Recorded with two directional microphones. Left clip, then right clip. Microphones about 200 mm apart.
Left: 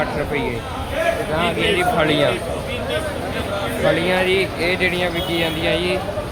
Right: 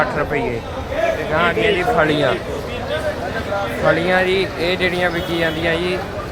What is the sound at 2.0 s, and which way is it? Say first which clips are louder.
Speech: right 1 dB; centre (ahead or behind).